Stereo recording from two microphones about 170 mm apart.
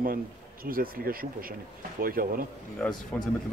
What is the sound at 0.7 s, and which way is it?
Speech, 55° right (ahead or behind).